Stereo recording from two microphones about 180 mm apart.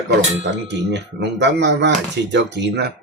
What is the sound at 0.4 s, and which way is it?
Speech, 75° right (ahead or behind).